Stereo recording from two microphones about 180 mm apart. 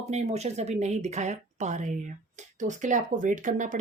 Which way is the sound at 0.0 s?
40° right (ahead or behind).